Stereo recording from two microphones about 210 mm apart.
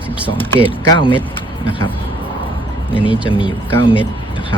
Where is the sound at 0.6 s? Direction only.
20° left (ahead or behind).